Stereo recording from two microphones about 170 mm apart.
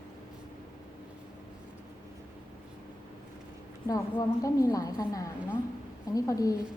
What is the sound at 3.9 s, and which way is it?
A woman's voice, 20° left (ahead or behind).